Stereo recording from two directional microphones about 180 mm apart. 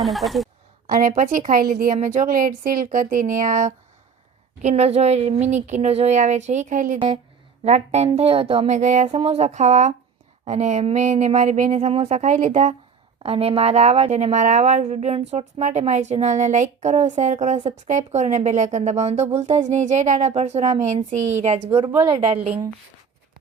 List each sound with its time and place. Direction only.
0.0 s a woman's voice: centre (ahead or behind)
0.9 s a woman's voice: 50° right (ahead or behind)
21.8 s speech: 30° right (ahead or behind)